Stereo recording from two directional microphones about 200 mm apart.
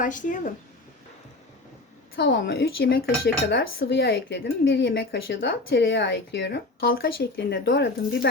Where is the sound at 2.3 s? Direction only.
50° left (ahead or behind).